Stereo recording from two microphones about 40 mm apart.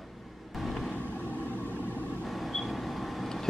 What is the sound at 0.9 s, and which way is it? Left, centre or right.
Vehicle, left.